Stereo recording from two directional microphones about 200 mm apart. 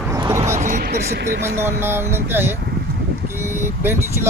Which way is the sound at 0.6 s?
40° right (ahead or behind).